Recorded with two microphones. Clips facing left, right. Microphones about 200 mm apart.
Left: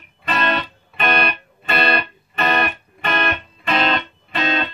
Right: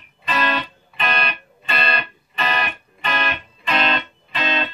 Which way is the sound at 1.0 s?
55° left (ahead or behind).